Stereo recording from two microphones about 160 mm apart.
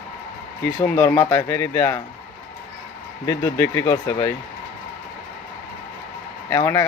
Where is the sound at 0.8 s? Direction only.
15° left (ahead or behind).